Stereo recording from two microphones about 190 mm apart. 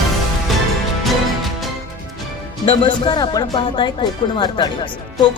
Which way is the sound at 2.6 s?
25° left (ahead or behind).